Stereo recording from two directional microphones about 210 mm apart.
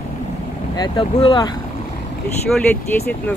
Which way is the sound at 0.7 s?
20° left (ahead or behind).